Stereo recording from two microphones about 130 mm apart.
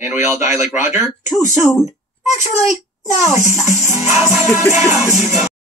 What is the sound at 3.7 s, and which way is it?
Music, 25° right (ahead or behind).